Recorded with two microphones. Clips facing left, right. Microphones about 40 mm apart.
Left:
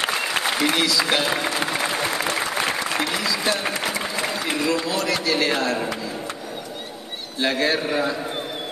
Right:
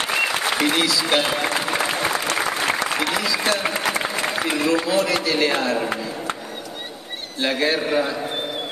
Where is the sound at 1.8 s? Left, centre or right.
Centre.